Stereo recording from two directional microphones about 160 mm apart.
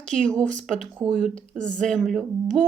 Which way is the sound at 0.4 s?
50° right (ahead or behind).